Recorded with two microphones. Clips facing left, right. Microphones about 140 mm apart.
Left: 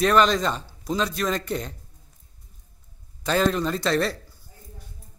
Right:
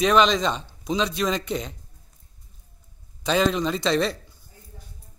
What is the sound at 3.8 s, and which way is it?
Speech, 5° left (ahead or behind).